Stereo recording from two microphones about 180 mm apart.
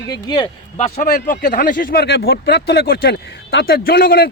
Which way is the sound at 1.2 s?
65° left (ahead or behind).